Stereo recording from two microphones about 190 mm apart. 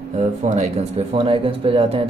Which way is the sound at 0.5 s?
35° right (ahead or behind).